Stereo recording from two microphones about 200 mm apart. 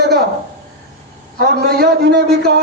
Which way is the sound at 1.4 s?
55° right (ahead or behind).